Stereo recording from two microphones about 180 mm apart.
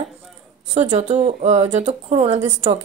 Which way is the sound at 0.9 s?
40° right (ahead or behind).